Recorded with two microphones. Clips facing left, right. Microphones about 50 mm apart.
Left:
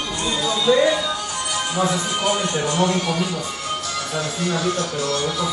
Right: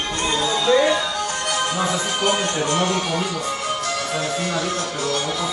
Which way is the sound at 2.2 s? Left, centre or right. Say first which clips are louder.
Right 1 dB; right.